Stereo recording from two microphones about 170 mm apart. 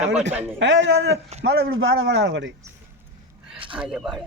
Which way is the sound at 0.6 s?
90° right.